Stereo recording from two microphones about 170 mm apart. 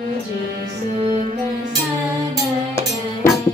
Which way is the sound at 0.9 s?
40° right (ahead or behind).